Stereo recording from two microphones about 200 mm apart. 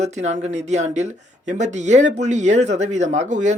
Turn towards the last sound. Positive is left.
turn(degrees=-35)  # may be behind; listen again after turning